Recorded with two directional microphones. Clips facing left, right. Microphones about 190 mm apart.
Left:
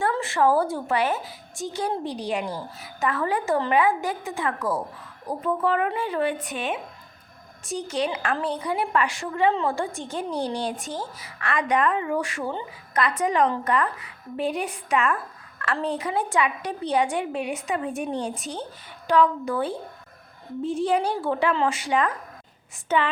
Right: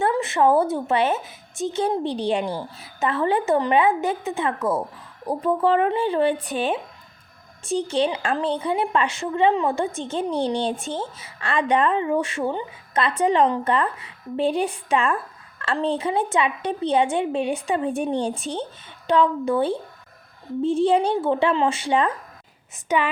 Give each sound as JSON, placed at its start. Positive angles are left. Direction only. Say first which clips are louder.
{"t": 0.0, "sound": "speech", "louder": "right 3 dB", "side_deg": -20}
{"t": 22.9, "sound": "a woman's voice", "louder": "right 1 dB", "side_deg": -15}